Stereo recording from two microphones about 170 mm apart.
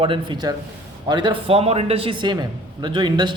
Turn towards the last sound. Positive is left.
turn(degrees=-25)  # may be behind; listen again after turning